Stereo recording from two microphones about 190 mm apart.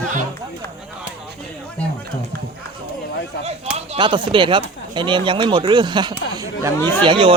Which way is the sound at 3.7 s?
30° right (ahead or behind).